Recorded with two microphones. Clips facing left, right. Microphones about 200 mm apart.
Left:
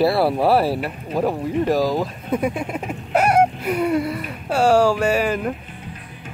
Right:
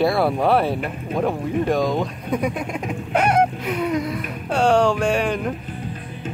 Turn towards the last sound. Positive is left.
turn(degrees=5)  # may be behind; listen again after turning